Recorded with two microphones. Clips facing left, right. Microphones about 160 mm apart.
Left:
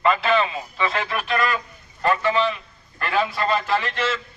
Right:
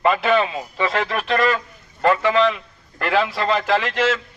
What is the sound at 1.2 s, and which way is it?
A man's voice, 90° right.